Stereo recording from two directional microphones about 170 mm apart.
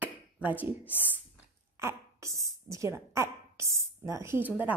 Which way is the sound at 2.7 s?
15° right (ahead or behind).